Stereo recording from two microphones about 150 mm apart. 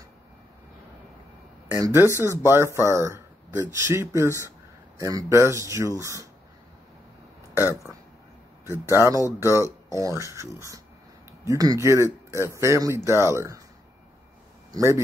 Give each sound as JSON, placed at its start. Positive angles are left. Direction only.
{"t": 1.7, "sound": "speech", "side_deg": -20}
{"t": 8.6, "sound": "speech", "side_deg": -15}
{"t": 14.7, "sound": "speech", "side_deg": -20}